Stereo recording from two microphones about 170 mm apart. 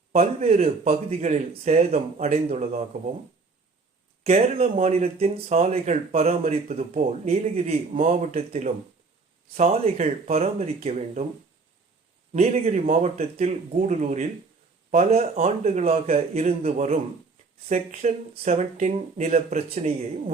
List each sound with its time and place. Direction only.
0.1 s speech: 40° right (ahead or behind)
4.2 s speech: 35° right (ahead or behind)
12.3 s speech: 35° right (ahead or behind)